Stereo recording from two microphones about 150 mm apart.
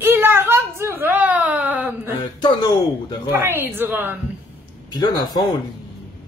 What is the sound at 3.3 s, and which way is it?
Speech, 15° right (ahead or behind).